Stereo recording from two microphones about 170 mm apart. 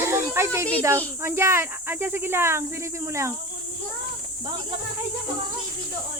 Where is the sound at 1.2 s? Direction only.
15° right (ahead or behind).